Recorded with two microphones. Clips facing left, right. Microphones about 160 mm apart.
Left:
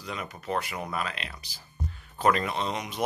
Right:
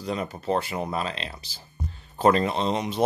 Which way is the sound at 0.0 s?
35° right (ahead or behind).